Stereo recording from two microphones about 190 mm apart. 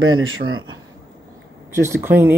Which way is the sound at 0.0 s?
90° right.